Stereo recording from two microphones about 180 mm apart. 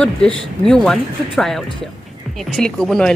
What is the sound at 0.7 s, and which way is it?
Speech, 5° left (ahead or behind).